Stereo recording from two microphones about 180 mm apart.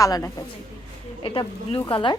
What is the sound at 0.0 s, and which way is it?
Speech, 20° left (ahead or behind).